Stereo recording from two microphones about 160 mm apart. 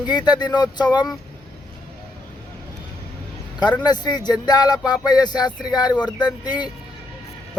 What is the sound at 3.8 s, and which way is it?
Speech, 25° left (ahead or behind).